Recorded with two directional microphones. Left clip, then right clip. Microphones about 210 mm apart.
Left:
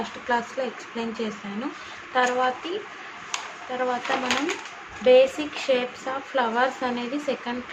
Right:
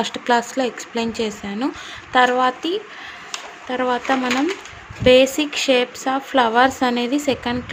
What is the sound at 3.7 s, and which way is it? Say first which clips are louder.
Speech: right 5 dB; 50° right (ahead or behind).